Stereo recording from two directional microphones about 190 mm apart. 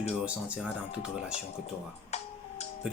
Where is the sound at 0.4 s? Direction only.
5° right (ahead or behind).